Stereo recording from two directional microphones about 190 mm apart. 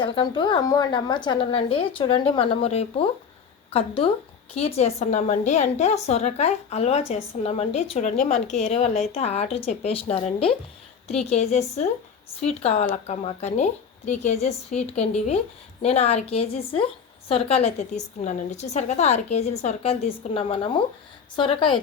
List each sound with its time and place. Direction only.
0.0 s a woman's voice: 25° left (ahead or behind)